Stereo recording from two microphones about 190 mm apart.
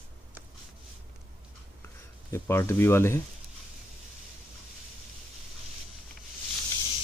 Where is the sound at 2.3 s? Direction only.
15° left (ahead or behind).